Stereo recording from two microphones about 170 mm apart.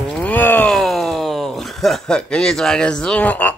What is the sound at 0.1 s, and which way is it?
Speech, 5° left (ahead or behind).